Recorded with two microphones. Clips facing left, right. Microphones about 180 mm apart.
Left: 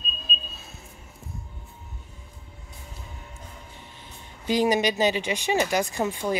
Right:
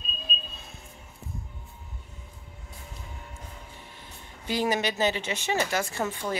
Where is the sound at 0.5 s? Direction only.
5° left (ahead or behind).